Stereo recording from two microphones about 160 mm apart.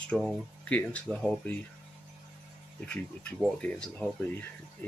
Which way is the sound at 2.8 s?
5° left (ahead or behind).